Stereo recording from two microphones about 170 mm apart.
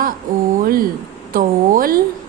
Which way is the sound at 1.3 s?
55° right (ahead or behind).